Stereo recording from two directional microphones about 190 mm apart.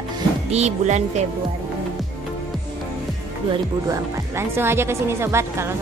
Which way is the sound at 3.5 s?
15° right (ahead or behind).